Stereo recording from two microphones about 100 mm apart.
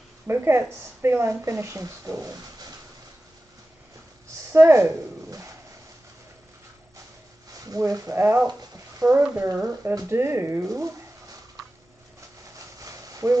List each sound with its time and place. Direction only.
0.3 s a woman's voice: 25° right (ahead or behind)
4.5 s speech: 25° right (ahead or behind)
7.6 s a woman's voice: 40° right (ahead or behind)
12.7 s a sound: 35° right (ahead or behind)